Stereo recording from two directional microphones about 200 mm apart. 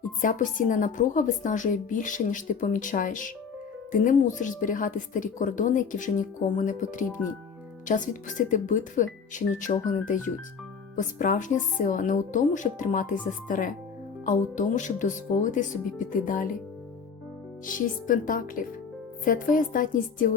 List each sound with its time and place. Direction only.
0.2 s a woman's voice: 40° left (ahead or behind)
17.7 s a woman's voice: 40° left (ahead or behind)